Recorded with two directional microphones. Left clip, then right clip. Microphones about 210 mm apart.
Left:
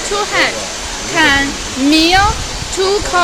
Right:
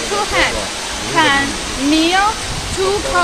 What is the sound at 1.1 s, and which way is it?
Speech, 50° left (ahead or behind).